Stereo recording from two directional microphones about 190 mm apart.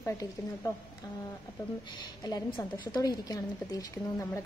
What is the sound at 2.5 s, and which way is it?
A woman's voice, 20° left (ahead or behind).